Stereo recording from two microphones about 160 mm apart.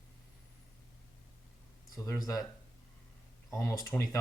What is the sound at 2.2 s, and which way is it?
Speech, 20° left (ahead or behind).